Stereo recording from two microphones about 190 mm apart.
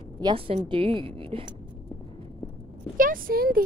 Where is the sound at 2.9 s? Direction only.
45° right (ahead or behind).